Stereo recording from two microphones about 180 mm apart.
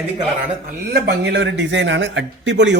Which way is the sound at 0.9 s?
70° right (ahead or behind).